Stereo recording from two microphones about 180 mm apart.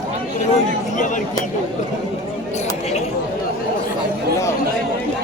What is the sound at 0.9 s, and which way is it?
Speech, 45° left (ahead or behind).